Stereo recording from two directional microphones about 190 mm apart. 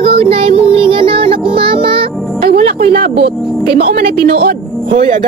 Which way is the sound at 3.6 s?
30° right (ahead or behind).